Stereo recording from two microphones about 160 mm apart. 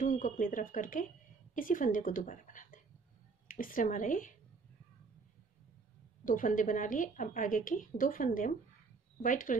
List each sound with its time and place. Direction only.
0.0 s a woman's voice: 55° left (ahead or behind)
6.2 s a woman's voice: 55° left (ahead or behind)